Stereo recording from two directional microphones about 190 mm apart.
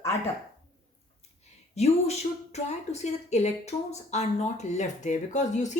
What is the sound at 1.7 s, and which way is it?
A woman's voice, 35° left (ahead or behind).